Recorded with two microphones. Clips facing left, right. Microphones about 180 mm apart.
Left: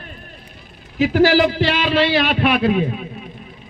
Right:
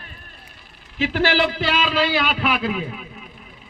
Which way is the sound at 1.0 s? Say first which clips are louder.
Left 6 dB; 40° left (ahead or behind).